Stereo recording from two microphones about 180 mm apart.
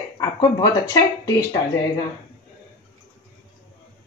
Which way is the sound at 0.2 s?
25° left (ahead or behind).